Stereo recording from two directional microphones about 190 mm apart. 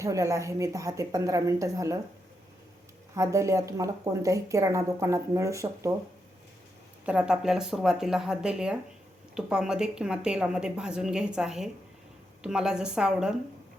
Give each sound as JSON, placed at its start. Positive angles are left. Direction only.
{"t": 0.0, "sound": "speech", "side_deg": -15}
{"t": 3.2, "sound": "speech", "side_deg": -15}
{"t": 7.0, "sound": "speech", "side_deg": -5}